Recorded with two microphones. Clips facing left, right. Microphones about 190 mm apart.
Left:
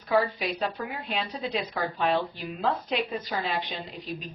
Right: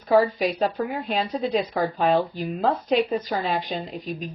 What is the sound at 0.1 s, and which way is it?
Speech, 40° right (ahead or behind).